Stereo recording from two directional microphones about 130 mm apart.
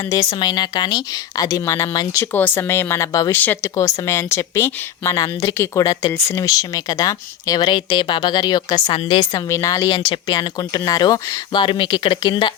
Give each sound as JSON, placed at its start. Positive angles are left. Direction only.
{"t": 0.1, "sound": "speech", "side_deg": 35}
{"t": 9.5, "sound": "speech", "side_deg": 25}